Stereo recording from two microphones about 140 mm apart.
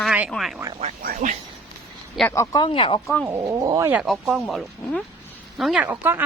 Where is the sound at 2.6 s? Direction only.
40° left (ahead or behind).